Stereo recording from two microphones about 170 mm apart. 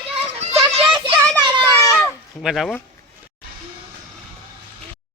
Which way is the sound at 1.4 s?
25° right (ahead or behind).